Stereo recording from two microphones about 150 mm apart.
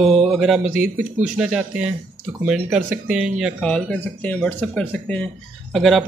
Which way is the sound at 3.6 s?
5° left (ahead or behind).